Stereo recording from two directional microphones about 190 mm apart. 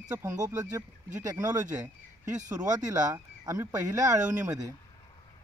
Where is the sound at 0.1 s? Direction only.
10° right (ahead or behind).